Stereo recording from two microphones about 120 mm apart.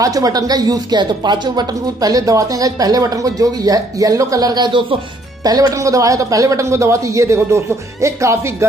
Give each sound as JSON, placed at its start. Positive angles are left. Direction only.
{"t": 0.0, "sound": "a man's voice", "side_deg": -30}